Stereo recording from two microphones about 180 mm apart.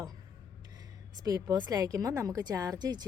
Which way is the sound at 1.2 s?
20° right (ahead or behind).